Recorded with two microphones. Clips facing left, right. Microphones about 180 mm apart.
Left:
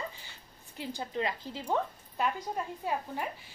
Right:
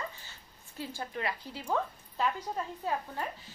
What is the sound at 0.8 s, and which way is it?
Speech, 25° left (ahead or behind).